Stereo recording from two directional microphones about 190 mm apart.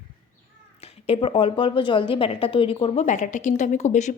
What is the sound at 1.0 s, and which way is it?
A woman's voice, 30° left (ahead or behind).